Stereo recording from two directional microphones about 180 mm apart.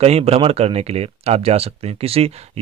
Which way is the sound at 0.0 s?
35° right (ahead or behind).